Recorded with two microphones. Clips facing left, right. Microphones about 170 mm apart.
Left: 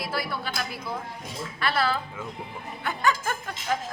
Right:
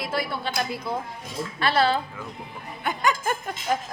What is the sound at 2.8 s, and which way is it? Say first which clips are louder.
Music: right 2 dB; 15° right (ahead or behind).